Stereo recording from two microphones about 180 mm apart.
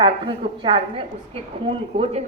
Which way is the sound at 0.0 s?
30° right (ahead or behind).